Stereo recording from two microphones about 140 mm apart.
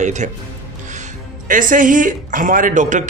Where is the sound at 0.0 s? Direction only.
60° right (ahead or behind).